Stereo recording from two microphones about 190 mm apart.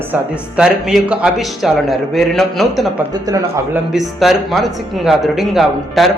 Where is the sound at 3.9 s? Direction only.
Centre (ahead or behind).